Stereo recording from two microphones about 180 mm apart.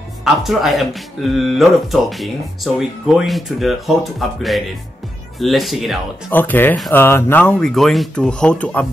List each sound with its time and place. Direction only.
0.2 s speech: centre (ahead or behind)
6.3 s speech: 10° left (ahead or behind)